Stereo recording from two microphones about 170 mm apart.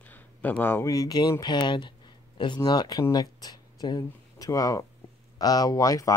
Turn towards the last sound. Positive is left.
turn(degrees=20)  # may be behind; listen again after turning